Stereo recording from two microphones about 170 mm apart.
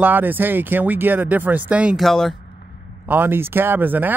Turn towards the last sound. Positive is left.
turn(degrees=-10)  # may be behind; listen again after turning